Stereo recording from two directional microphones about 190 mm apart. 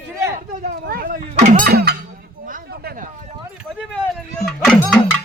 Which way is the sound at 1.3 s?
40° right (ahead or behind).